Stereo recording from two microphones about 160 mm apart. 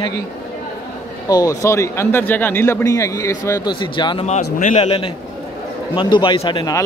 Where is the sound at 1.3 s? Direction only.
20° left (ahead or behind).